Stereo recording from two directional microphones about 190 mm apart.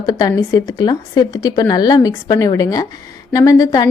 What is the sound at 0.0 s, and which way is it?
A woman's voice, 20° left (ahead or behind).